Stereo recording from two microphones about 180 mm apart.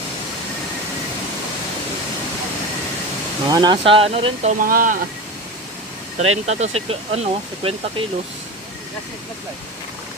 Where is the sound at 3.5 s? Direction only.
25° right (ahead or behind).